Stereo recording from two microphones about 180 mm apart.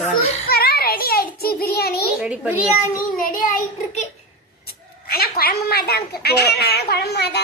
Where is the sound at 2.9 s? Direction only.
50° left (ahead or behind).